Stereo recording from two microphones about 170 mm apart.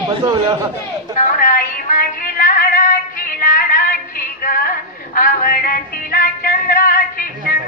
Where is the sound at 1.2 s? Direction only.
55° left (ahead or behind).